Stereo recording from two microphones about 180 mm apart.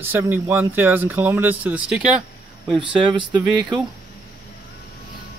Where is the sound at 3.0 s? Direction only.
25° right (ahead or behind).